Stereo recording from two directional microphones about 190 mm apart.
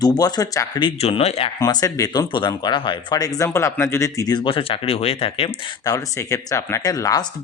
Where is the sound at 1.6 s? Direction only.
20° left (ahead or behind).